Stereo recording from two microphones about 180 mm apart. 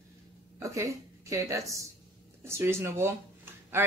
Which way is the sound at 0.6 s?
15° right (ahead or behind).